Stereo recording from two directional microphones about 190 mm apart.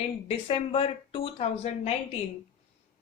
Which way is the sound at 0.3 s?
30° left (ahead or behind).